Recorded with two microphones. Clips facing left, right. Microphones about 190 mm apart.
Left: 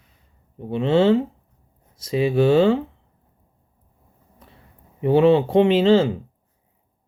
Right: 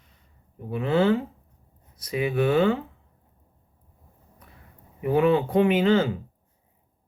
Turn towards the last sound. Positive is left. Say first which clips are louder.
# left 5 dB
turn(degrees=25)  # may be behind; listen again after turning